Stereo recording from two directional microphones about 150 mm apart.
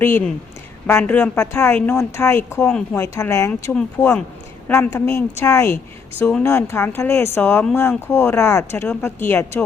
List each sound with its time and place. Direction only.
0.0 s speech: 10° left (ahead or behind)
2.6 s speech: 5° left (ahead or behind)
2.9 s speech: 20° left (ahead or behind)
3.8 s speech: 5° left (ahead or behind)
4.7 s speech: 15° left (ahead or behind)